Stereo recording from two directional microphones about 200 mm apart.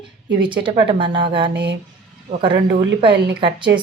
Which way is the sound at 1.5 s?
60° right (ahead or behind).